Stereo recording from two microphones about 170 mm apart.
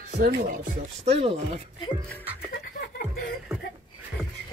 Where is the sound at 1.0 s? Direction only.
35° right (ahead or behind).